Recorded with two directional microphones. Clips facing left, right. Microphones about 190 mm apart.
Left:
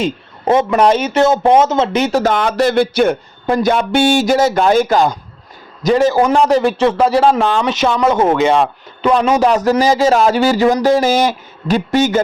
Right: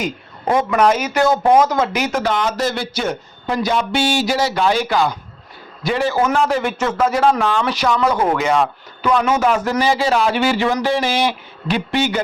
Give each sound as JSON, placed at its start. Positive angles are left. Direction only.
{"t": 0.0, "sound": "a man's voice", "side_deg": 25}
{"t": 2.2, "sound": "a man's voice", "side_deg": 55}